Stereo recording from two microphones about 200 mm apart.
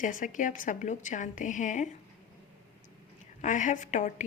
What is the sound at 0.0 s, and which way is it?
A woman's voice, 40° left (ahead or behind).